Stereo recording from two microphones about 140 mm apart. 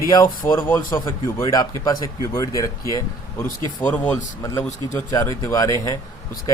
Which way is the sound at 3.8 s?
10° left (ahead or behind).